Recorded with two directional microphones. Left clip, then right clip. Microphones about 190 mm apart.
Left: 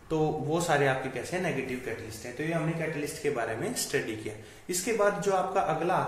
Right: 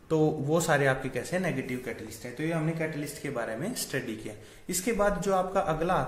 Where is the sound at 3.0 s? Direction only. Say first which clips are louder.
Left 3 dB; 45° right (ahead or behind).